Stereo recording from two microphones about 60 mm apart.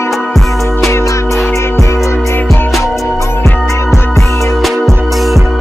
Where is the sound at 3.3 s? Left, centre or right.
Left.